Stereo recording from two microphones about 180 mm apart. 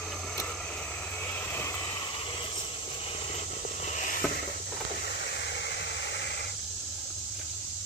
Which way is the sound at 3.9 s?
45° left (ahead or behind).